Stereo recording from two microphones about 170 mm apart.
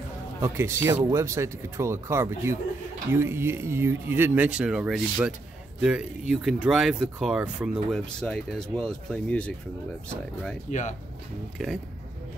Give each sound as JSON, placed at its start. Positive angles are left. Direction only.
{"t": 0.4, "sound": "speech", "side_deg": -15}
{"t": 10.7, "sound": "speech", "side_deg": 45}
{"t": 11.5, "sound": "speech", "side_deg": 0}